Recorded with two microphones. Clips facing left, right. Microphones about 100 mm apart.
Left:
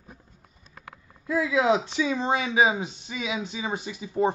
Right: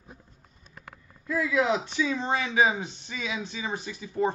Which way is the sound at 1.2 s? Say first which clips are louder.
Left 2 dB; 20° left (ahead or behind).